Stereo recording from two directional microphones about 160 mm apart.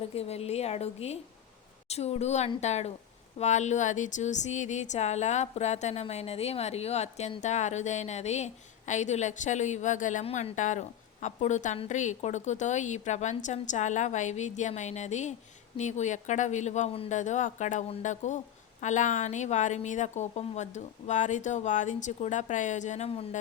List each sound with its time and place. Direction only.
0.1 s a woman's voice: 40° left (ahead or behind)